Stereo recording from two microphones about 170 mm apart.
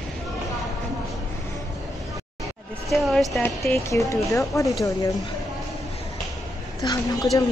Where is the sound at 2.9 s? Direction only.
Centre (ahead or behind).